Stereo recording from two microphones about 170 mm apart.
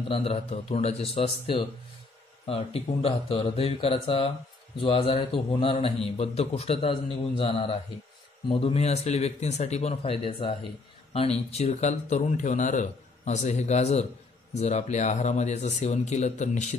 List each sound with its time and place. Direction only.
0.1 s speech: 35° left (ahead or behind)